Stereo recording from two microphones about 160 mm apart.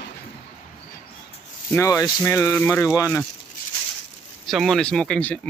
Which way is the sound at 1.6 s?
20° left (ahead or behind).